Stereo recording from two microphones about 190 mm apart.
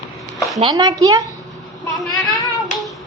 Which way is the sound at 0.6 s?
25° right (ahead or behind).